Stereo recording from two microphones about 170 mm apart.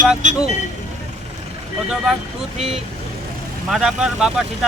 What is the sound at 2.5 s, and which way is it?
Speech, 35° right (ahead or behind).